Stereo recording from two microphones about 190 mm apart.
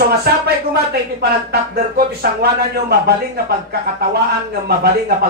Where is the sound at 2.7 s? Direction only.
55° right (ahead or behind).